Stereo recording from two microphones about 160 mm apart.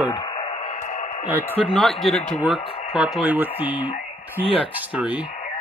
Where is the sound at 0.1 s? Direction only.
30° left (ahead or behind).